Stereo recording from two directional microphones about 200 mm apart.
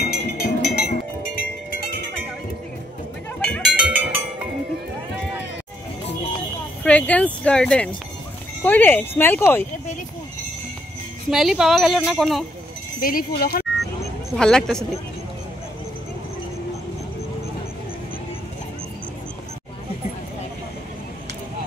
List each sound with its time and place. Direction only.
0.0 s music: 50° left (ahead or behind)
3.3 s cowbell: 5° left (ahead or behind)
6.8 s speech: 5° left (ahead or behind)
11.2 s speech: centre (ahead or behind)
13.0 s speech: 50° left (ahead or behind)
14.3 s speech: 5° left (ahead or behind)